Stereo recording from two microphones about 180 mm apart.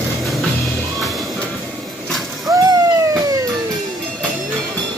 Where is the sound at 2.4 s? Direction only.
20° right (ahead or behind).